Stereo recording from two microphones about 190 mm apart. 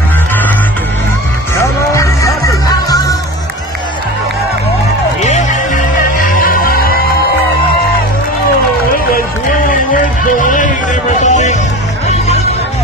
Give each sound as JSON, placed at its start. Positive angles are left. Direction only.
{"t": 1.6, "sound": "music", "side_deg": 15}
{"t": 5.2, "sound": "music", "side_deg": 40}
{"t": 9.7, "sound": "music", "side_deg": 45}